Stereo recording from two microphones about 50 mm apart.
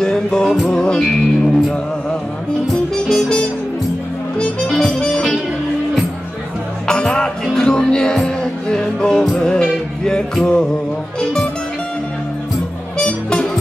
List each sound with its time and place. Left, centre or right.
0.0 s music: centre
3.1 s music: centre
4.4 s music: centre
6.9 s music: centre
12.9 s music: centre